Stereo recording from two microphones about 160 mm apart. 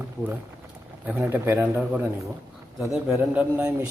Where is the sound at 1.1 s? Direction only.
10° right (ahead or behind).